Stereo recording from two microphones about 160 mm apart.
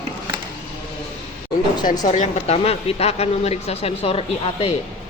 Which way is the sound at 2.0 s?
45° left (ahead or behind).